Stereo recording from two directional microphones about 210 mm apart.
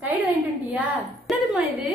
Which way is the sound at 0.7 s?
5° right (ahead or behind).